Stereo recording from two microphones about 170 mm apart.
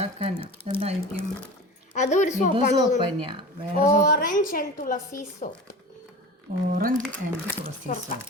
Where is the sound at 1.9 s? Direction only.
45° left (ahead or behind).